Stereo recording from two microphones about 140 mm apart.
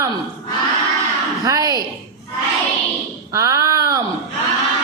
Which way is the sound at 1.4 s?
25° right (ahead or behind).